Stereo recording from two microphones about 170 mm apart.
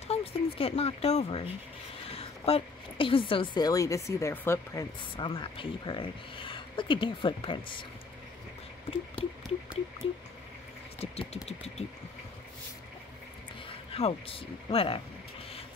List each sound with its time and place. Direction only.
0.1 s a sound: 35° left (ahead or behind)
0.6 s a woman's voice: 35° left (ahead or behind); by 4.8 s 15° left (ahead or behind)
5.1 s speech: 30° left (ahead or behind)
10.0 s speech: 35° left (ahead or behind)
13.7 s speech: 35° left (ahead or behind)